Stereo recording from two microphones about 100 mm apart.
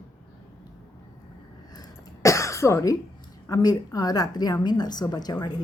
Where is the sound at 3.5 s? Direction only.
40° left (ahead or behind).